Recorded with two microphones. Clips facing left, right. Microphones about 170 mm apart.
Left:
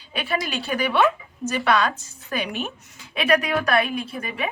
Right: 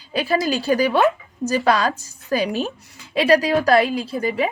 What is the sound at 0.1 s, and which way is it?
A woman's voice, 35° right (ahead or behind).